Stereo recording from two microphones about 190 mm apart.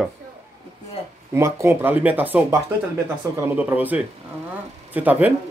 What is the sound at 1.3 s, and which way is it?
Speech, 15° right (ahead or behind).